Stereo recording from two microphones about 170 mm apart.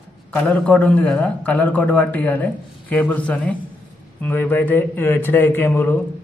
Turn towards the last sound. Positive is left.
turn(degrees=15)  # may be behind; listen again after turning